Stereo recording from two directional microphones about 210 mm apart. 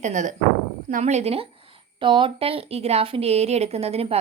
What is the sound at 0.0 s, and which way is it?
A woman's voice, 35° right (ahead or behind).